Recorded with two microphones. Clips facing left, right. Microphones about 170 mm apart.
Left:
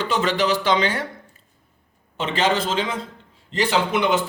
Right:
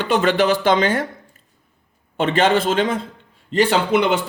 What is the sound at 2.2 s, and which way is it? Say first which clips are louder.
A man's voice: right 5 dB; 55° right (ahead or behind).